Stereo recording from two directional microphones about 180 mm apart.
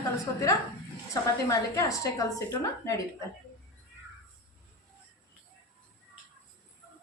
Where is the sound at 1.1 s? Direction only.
15° left (ahead or behind).